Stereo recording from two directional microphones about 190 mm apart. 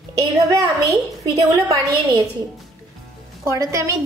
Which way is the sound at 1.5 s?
20° right (ahead or behind).